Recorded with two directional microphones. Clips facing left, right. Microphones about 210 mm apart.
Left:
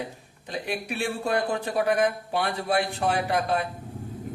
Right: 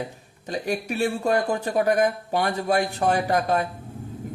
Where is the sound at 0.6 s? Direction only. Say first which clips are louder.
Right 5 dB; 45° right (ahead or behind).